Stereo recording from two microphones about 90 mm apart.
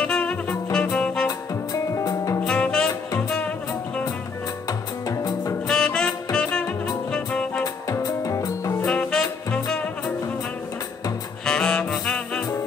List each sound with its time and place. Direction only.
0.0 s music: 10° left (ahead or behind)
1.2 s music: 35° left (ahead or behind)
2.4 s music: 10° left (ahead or behind)
4.6 s music: 40° left (ahead or behind)
5.7 s saxophone: 10° left (ahead or behind)
7.1 s music: 10° left (ahead or behind)
7.6 s music: 45° left (ahead or behind)
8.8 s music: 10° left (ahead or behind)
11.4 s music: 10° left (ahead or behind)